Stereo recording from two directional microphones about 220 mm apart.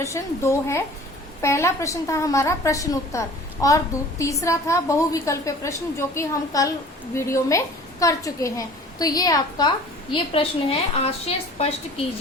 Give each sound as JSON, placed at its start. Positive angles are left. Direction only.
{"t": 0.0, "sound": "a woman's voice", "side_deg": 15}